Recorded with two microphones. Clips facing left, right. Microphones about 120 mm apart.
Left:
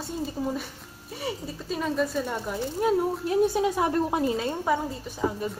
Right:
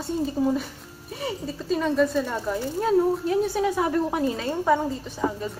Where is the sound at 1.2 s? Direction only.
5° left (ahead or behind); by 4.2 s 25° left (ahead or behind).